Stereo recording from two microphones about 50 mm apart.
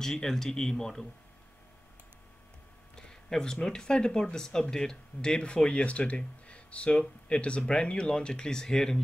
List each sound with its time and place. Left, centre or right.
0.0 s speech: centre
3.0 s speech: centre